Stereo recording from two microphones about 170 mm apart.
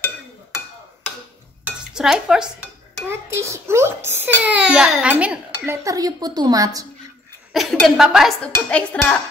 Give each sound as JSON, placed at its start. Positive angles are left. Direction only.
{"t": 1.6, "sound": "dishes", "side_deg": -5}
{"t": 3.1, "sound": "a child's voice", "side_deg": -15}
{"t": 5.2, "sound": "dishes", "side_deg": -5}
{"t": 5.9, "sound": "a woman's voice", "side_deg": -20}
{"t": 7.5, "sound": "speech", "side_deg": 0}